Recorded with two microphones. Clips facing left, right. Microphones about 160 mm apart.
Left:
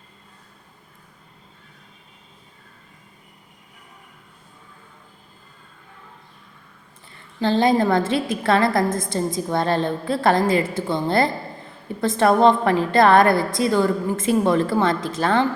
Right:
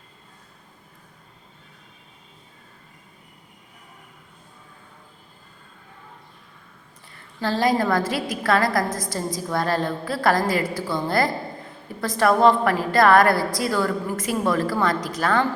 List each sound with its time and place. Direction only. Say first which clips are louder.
7.3 s a woman's voice: left 3 dB; 20° left (ahead or behind)